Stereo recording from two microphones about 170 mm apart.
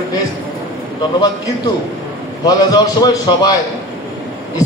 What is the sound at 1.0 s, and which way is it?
A man's voice, 20° left (ahead or behind).